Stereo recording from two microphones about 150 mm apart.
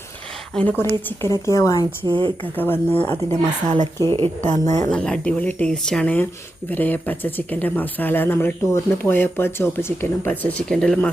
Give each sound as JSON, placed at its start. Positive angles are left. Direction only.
{"t": 0.5, "sound": "a woman's voice", "side_deg": 10}
{"t": 2.0, "sound": "speech", "side_deg": -30}
{"t": 2.4, "sound": "speech", "side_deg": 10}
{"t": 4.1, "sound": "speech", "side_deg": -30}
{"t": 4.9, "sound": "speech", "side_deg": 5}